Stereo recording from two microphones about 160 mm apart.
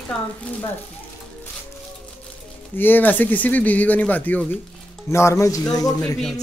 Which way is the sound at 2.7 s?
10° left (ahead or behind).